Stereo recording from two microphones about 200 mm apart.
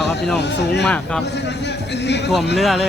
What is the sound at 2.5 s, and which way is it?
Speech, centre (ahead or behind).